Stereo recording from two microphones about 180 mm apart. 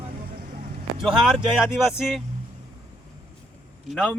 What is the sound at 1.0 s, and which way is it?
Speech, centre (ahead or behind).